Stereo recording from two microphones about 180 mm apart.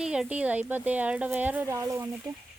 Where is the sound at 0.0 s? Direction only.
5° right (ahead or behind).